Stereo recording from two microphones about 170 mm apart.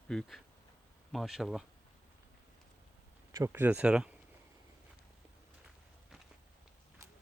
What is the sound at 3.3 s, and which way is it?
Speech, 20° right (ahead or behind).